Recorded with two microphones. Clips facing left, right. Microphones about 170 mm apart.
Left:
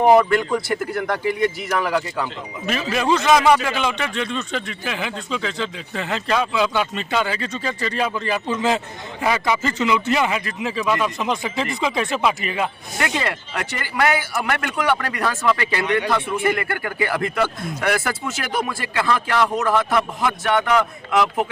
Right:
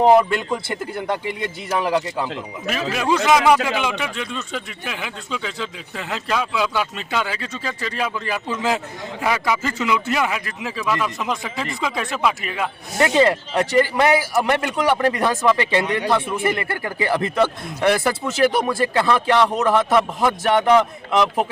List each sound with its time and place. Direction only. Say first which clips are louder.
0.0 s speech: even; 20° right (ahead or behind)
2.2 s speech: even; 5° right (ahead or behind)
13.0 s speech: right 8 dB; 30° right (ahead or behind)
18.9 s speech: right 2 dB; 30° right (ahead or behind)